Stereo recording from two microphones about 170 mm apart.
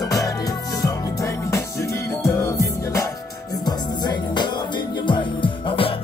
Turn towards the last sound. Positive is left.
turn(degrees=30)  # may be behind; listen again after turning